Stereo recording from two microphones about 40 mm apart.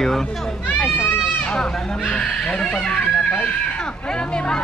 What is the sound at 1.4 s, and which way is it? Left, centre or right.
Speech, left.